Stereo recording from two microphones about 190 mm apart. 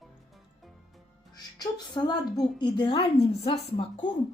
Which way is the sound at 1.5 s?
20° left (ahead or behind).